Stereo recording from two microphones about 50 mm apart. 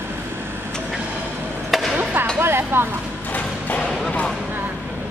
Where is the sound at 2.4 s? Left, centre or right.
Right.